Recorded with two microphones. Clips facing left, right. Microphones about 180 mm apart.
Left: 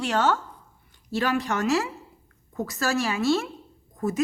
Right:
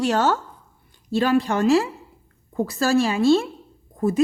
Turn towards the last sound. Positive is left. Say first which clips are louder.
# right 5 dB
turn(degrees=-30)  # may be behind; listen again after turning